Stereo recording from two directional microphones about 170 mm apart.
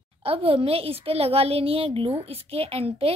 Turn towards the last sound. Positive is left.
turn(degrees=-35)  # may be behind; listen again after turning